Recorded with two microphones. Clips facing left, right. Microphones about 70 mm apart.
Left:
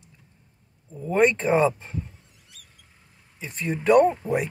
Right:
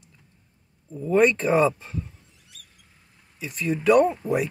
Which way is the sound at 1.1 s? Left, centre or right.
Left.